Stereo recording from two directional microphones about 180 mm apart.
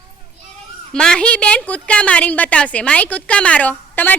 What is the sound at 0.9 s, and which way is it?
A woman's voice, 5° left (ahead or behind).